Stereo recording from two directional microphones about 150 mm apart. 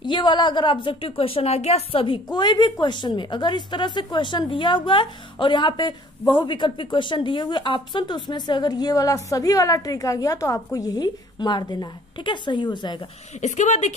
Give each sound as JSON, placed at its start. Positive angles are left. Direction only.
{"t": 0.0, "sound": "a woman's voice", "side_deg": 30}
{"t": 13.4, "sound": "speech", "side_deg": 50}